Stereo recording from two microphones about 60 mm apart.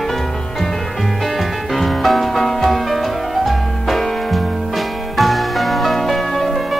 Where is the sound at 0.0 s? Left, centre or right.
Centre.